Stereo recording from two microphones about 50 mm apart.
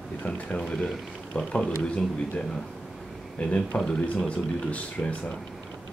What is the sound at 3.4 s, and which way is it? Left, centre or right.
Speech, left.